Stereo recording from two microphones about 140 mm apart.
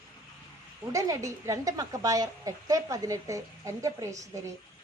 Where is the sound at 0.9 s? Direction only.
25° right (ahead or behind).